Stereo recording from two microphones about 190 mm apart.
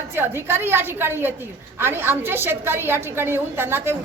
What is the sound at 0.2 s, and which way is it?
A woman's voice, 10° right (ahead or behind).